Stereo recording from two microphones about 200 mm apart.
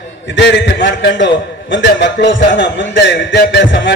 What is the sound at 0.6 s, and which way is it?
A man's voice, 65° left (ahead or behind).